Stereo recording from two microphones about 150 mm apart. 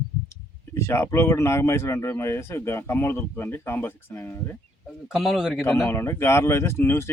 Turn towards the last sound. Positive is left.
turn(degrees=15)  # may be behind; listen again after turning